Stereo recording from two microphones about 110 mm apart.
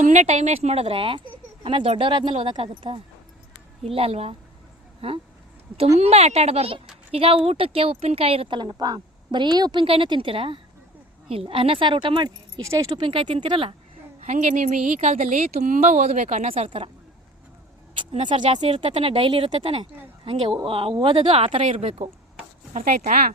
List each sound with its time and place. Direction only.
0.0 s speech: 90° right; by 3.0 s 55° right (ahead or behind)
3.8 s speech: 65° right (ahead or behind)
6.0 s a woman's voice: 75° right (ahead or behind); by 9.8 s 40° right (ahead or behind)
9.8 s speech: 55° right (ahead or behind)
12.6 s speech: 30° right (ahead or behind)
13.0 s speech: 55° right (ahead or behind)
14.3 s a woman's voice: 90° right
18.5 s speech: 75° right (ahead or behind)